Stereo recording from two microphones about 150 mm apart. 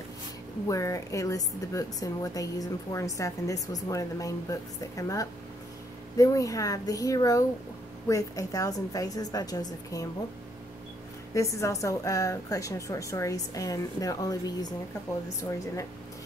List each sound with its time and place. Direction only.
0.7 s a woman's voice: 20° left (ahead or behind)
11.3 s a woman's voice: 20° left (ahead or behind)